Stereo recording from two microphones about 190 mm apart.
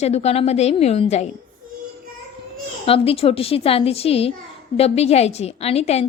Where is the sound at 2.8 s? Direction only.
30° left (ahead or behind).